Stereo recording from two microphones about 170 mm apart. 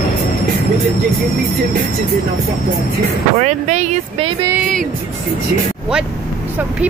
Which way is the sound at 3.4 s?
45° right (ahead or behind).